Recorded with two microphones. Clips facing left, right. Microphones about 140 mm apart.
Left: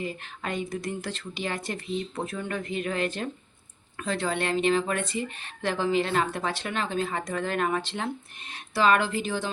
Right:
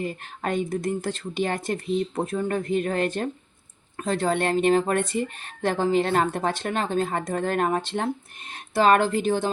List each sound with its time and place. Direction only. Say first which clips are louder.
0.0 s speech: right 4 dB; 45° right (ahead or behind)